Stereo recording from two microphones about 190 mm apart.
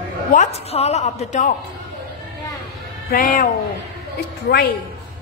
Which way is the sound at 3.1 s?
45° left (ahead or behind).